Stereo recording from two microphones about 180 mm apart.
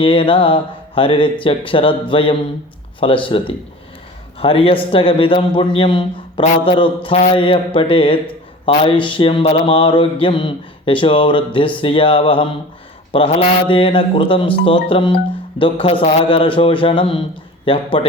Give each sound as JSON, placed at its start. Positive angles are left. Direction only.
{"t": 0.0, "sound": "a man's voice", "side_deg": 30}